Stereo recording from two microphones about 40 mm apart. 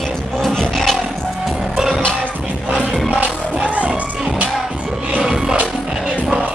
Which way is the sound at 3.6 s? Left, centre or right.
Right.